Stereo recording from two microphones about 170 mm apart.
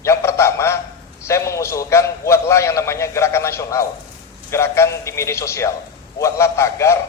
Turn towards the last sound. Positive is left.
turn(degrees=15)  # may be behind; listen again after turning